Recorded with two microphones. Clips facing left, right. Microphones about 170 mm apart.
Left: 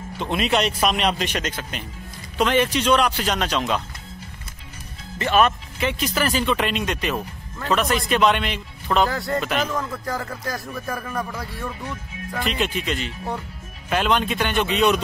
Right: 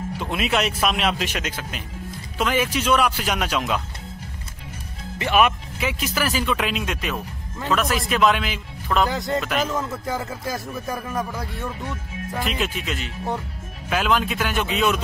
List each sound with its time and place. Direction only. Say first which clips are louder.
0.2 s speech: left 2 dB; 5° right (ahead or behind)
5.2 s speech: even; 10° right (ahead or behind)
9.1 s speech: right 1 dB; 20° right (ahead or behind)
9.4 s speech: even; centre (ahead or behind)